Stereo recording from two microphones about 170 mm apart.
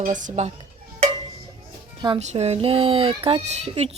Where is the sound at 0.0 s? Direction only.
50° right (ahead or behind).